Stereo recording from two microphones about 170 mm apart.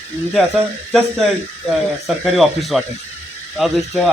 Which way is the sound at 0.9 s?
Centre (ahead or behind).